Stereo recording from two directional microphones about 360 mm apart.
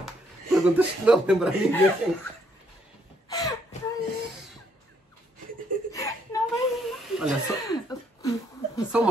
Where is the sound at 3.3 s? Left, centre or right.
Centre.